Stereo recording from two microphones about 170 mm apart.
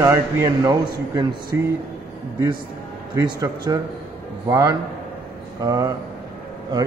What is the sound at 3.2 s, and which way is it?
A man's voice, 20° right (ahead or behind).